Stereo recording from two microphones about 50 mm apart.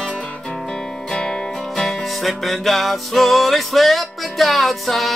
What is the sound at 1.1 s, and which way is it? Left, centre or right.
Music, centre.